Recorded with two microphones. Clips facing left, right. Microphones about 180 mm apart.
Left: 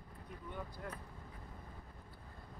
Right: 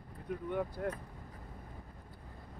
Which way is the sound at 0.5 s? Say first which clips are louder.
Right 11 dB; 60° right (ahead or behind).